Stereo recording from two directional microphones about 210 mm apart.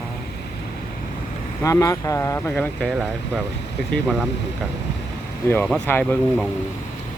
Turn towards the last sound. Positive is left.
turn(degrees=5)  # may be behind; listen again after turning